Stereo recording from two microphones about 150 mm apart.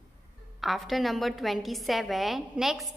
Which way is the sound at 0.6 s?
Centre (ahead or behind).